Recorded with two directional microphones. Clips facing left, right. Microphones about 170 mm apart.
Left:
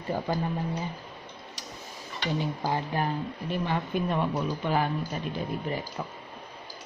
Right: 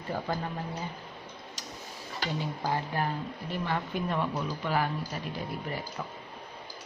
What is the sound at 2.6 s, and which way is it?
Speech, 20° left (ahead or behind).